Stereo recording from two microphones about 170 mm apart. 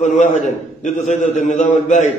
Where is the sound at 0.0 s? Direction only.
45° left (ahead or behind).